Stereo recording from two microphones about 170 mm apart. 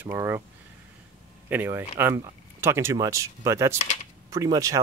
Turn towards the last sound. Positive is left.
turn(degrees=-20)  # may be behind; listen again after turning